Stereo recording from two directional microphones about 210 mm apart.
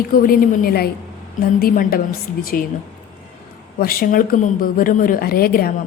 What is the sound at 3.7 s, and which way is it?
A woman's voice, 45° left (ahead or behind).